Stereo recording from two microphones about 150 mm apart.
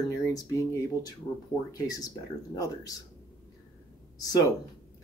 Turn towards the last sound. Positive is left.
turn(degrees=25)  # may be behind; listen again after turning